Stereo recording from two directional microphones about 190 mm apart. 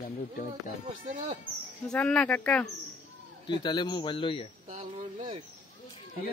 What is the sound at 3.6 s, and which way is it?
Speech, 25° left (ahead or behind).